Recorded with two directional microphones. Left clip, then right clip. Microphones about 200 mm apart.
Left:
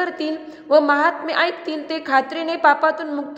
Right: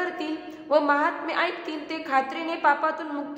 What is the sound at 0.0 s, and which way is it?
A woman's voice, 25° left (ahead or behind).